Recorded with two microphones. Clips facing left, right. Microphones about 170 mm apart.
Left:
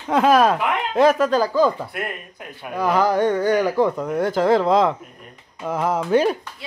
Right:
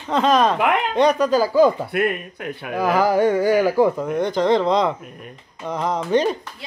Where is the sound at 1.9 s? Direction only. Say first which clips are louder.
Right 8 dB; 70° right (ahead or behind).